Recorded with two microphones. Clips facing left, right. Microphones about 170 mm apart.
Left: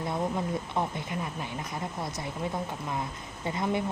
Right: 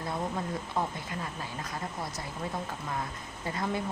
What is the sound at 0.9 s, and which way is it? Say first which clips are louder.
A woman's voice: left 3 dB; 20° left (ahead or behind).